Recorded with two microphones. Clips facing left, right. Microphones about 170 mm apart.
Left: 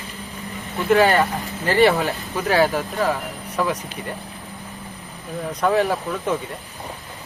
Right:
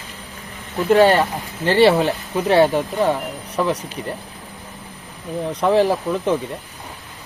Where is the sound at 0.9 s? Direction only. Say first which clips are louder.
Right 3 dB; 30° right (ahead or behind).